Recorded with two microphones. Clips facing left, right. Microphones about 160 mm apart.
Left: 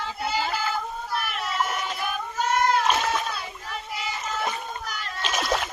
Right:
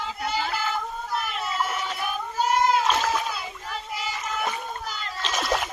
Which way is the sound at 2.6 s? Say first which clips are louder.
Even; 25° right (ahead or behind).